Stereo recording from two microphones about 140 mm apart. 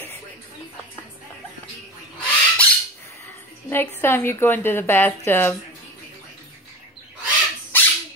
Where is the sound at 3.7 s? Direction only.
15° left (ahead or behind).